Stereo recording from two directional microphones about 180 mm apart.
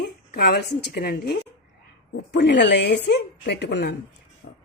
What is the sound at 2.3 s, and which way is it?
Speech, 70° left (ahead or behind).